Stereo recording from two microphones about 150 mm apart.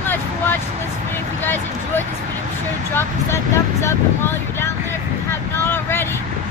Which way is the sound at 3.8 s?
15° left (ahead or behind).